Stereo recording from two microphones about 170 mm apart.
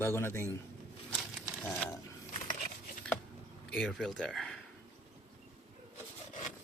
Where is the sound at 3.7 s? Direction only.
5° left (ahead or behind).